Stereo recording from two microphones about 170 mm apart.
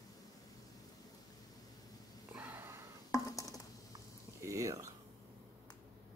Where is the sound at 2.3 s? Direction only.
10° right (ahead or behind).